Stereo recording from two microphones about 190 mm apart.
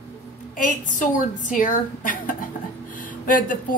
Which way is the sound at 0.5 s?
45° left (ahead or behind).